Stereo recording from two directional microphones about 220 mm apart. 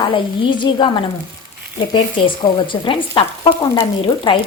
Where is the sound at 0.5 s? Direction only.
20° left (ahead or behind).